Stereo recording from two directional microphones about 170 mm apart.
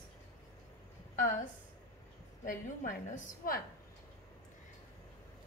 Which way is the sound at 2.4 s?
50° left (ahead or behind).